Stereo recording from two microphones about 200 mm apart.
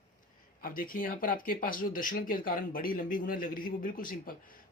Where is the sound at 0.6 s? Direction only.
45° left (ahead or behind).